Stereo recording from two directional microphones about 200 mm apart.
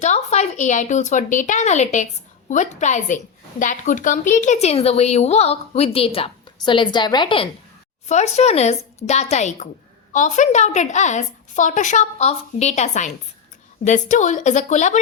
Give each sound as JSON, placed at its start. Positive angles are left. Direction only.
{"t": 0.0, "sound": "a woman's voice", "side_deg": 35}